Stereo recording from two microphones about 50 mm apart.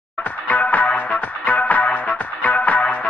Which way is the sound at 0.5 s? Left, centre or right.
Left.